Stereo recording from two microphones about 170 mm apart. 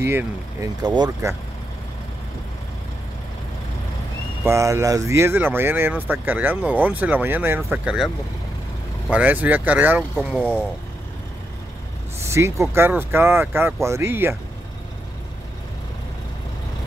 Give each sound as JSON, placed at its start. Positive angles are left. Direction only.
{"t": 0.0, "sound": "speech", "side_deg": -15}
{"t": 0.7, "sound": "speech", "side_deg": -25}
{"t": 4.5, "sound": "speech", "side_deg": -15}
{"t": 9.1, "sound": "speech", "side_deg": -10}
{"t": 12.2, "sound": "speech", "side_deg": -15}